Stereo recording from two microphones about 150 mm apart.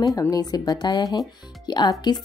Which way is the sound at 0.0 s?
25° left (ahead or behind).